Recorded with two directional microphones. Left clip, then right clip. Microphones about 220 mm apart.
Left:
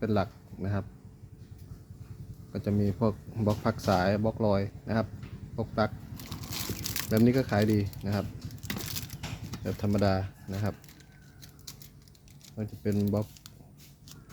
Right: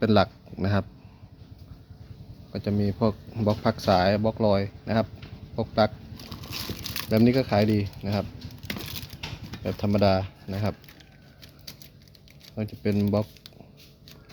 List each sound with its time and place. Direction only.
0.0 s a man's voice: 30° right (ahead or behind)
2.5 s speech: 5° right (ahead or behind)
8.7 s a sound: 10° right (ahead or behind)
9.5 s speech: 15° right (ahead or behind)
12.5 s speech: 20° right (ahead or behind)